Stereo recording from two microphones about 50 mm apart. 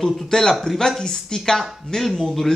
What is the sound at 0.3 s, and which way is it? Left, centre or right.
Speech, centre.